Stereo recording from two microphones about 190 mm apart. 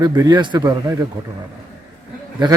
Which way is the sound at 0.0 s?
20° right (ahead or behind).